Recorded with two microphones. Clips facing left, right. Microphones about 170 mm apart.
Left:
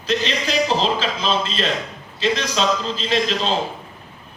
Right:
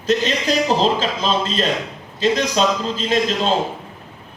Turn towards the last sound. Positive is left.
turn(degrees=-45)  # may be behind; listen again after turning